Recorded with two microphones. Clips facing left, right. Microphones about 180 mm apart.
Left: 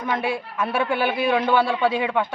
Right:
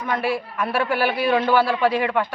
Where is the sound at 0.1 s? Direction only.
Centre (ahead or behind).